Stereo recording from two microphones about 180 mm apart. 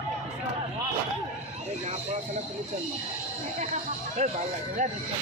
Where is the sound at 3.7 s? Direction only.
40° right (ahead or behind).